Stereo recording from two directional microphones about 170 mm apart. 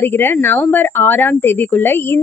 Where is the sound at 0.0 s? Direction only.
15° left (ahead or behind).